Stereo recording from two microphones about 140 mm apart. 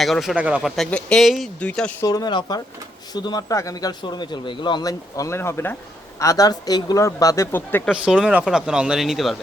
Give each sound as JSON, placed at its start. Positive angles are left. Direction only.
{"t": 0.0, "sound": "a man's voice", "side_deg": 0}
{"t": 0.8, "sound": "a man's voice", "side_deg": 5}
{"t": 2.0, "sound": "speech", "side_deg": 25}
{"t": 7.9, "sound": "a man's voice", "side_deg": -5}